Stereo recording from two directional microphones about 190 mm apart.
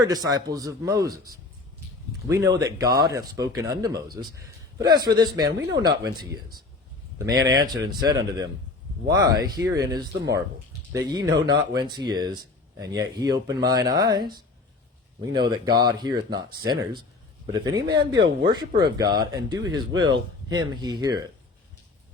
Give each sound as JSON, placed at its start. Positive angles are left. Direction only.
{"t": 0.1, "sound": "speech", "side_deg": -20}
{"t": 2.6, "sound": "speech", "side_deg": -20}
{"t": 11.3, "sound": "speech", "side_deg": -70}
{"t": 11.7, "sound": "speech", "side_deg": -20}